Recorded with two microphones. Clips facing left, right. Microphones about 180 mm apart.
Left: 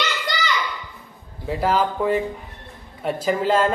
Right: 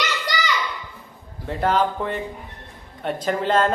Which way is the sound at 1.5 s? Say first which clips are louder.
Even; 5° left (ahead or behind).